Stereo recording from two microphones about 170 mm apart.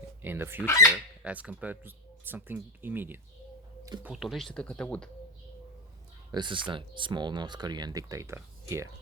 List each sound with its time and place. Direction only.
0.2 s speech: 10° right (ahead or behind)
0.6 s speech: 15° left (ahead or behind)
1.2 s speech: 10° right (ahead or behind)
6.3 s speech: 30° right (ahead or behind)